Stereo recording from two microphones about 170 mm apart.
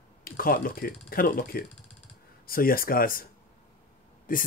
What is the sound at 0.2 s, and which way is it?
Speech, 60° left (ahead or behind).